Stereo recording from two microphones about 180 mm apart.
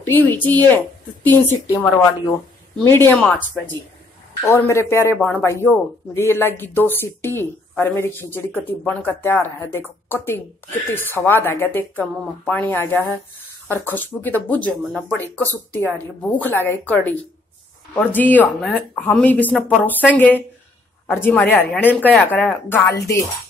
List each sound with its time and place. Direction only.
0.0 s speech: 10° left (ahead or behind)